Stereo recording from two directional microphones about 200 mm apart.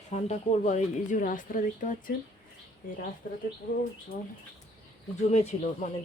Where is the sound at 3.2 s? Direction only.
50° left (ahead or behind).